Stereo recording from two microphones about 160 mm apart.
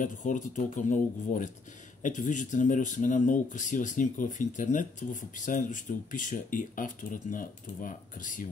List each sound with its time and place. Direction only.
0.0 s speech: 50° left (ahead or behind)